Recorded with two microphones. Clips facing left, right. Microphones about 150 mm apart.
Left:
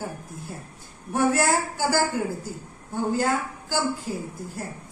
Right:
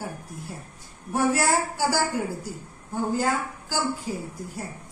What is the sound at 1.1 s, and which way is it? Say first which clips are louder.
A woman's voice: left 1 dB; 10° right (ahead or behind).